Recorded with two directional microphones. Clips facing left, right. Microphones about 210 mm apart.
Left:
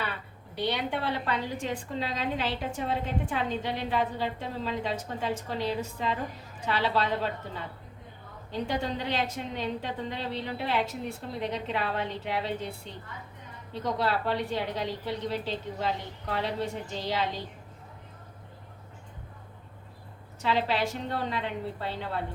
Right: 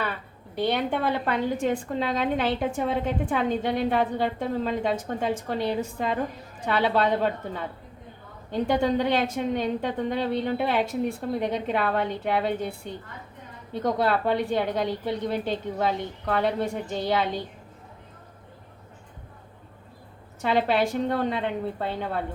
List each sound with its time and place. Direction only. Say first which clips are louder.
0.5 s a woman's voice: right 5 dB; 50° right (ahead or behind)
8.5 s a woman's voice: right 8 dB; 55° right (ahead or behind)
20.4 s a woman's voice: right 5 dB; 50° right (ahead or behind)